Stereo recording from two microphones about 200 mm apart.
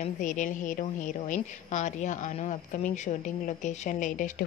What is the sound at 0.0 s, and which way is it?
A woman's voice, 40° left (ahead or behind).